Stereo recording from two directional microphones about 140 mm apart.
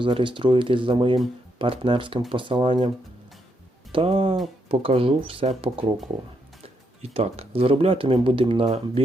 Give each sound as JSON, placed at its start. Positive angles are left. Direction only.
{"t": 0.0, "sound": "speech", "side_deg": -35}
{"t": 3.9, "sound": "speech", "side_deg": -45}